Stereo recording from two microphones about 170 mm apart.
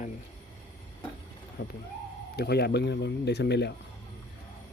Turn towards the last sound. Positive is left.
turn(degrees=80)